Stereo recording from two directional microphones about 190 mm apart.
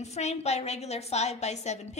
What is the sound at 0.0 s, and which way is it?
A woman's voice, 35° left (ahead or behind).